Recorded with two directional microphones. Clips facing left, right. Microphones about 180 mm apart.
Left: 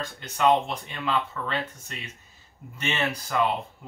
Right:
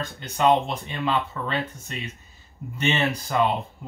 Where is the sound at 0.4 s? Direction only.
20° right (ahead or behind).